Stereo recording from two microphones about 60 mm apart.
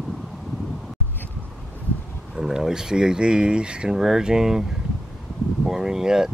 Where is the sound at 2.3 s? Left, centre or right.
Centre.